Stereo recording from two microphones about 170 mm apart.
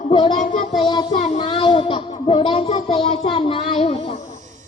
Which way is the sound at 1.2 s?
35° left (ahead or behind).